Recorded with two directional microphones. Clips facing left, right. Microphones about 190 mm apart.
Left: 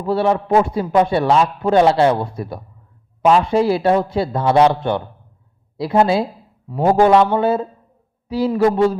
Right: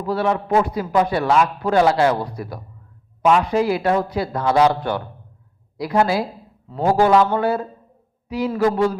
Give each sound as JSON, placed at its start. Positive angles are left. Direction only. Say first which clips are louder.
{"t": 0.0, "sound": "a man's voice", "louder": "left 3 dB", "side_deg": 25}